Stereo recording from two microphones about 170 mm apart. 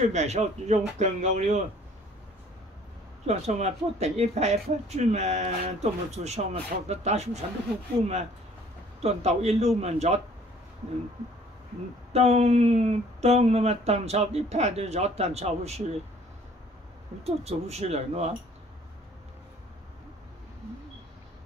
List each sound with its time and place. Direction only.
0.0 s speech: 40° right (ahead or behind)
3.3 s speech: 40° right (ahead or behind)
9.0 s speech: 40° right (ahead or behind)
12.1 s speech: 40° right (ahead or behind)
17.2 s speech: 40° right (ahead or behind)